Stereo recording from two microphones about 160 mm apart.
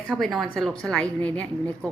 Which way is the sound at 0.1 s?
Centre (ahead or behind).